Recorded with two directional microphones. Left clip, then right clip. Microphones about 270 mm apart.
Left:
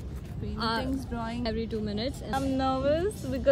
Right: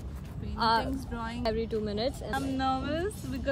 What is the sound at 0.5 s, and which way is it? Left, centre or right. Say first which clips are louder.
Speech: right 4 dB; centre.